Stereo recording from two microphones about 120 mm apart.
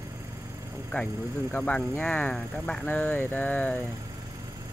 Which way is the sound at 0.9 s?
15° left (ahead or behind).